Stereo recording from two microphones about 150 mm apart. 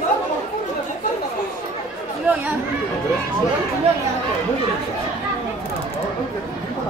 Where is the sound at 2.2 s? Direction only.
10° right (ahead or behind).